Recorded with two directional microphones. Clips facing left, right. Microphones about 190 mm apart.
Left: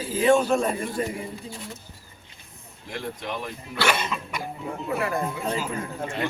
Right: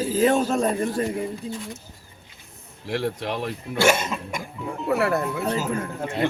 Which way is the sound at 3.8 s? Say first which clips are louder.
Right 5 dB; 45° right (ahead or behind).